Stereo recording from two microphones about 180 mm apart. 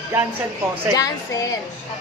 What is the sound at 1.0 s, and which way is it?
Speech, 20° left (ahead or behind).